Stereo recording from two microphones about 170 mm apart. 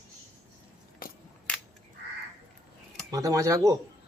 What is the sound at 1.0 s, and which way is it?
Crushing, 55° left (ahead or behind).